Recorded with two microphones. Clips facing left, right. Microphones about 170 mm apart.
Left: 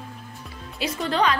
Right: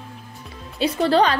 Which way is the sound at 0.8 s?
35° right (ahead or behind).